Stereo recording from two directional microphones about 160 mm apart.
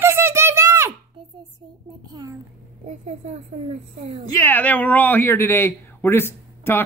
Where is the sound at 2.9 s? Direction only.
45° right (ahead or behind).